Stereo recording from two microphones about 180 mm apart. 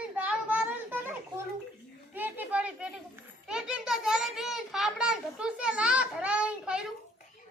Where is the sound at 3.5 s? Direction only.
5° right (ahead or behind).